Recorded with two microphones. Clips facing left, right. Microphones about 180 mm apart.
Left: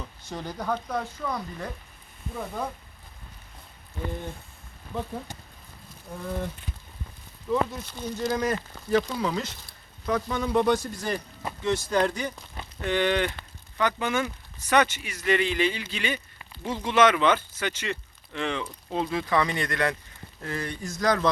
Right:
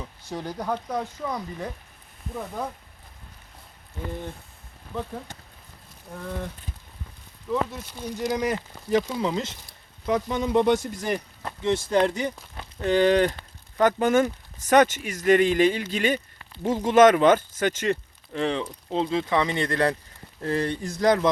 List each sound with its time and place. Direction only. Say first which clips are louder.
0.0 s speech: right 2 dB; 10° right (ahead or behind)
7.5 s speech: left 1 dB; centre (ahead or behind)
8.0 s speech: right 1 dB; 15° right (ahead or behind)
12.8 s speech: right 5 dB; 35° right (ahead or behind)
18.3 s speech: right 4 dB; 35° right (ahead or behind)